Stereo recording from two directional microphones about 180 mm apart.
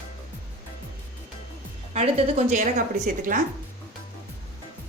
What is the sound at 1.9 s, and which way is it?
Speech, 40° right (ahead or behind).